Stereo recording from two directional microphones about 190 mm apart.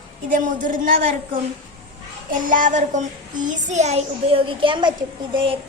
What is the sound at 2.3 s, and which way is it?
A child's voice, 45° right (ahead or behind).